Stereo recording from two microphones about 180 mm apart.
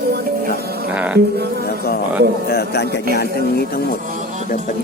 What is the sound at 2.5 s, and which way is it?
Speech, 60° left (ahead or behind).